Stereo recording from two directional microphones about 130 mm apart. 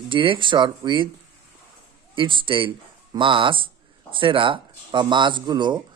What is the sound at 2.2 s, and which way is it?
A man's voice, 40° right (ahead or behind).